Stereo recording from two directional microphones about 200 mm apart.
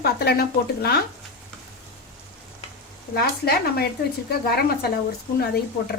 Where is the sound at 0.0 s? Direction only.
50° left (ahead or behind).